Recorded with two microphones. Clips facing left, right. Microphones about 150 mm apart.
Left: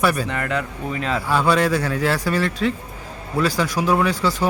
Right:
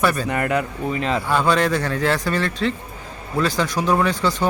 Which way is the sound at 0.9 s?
Centre (ahead or behind).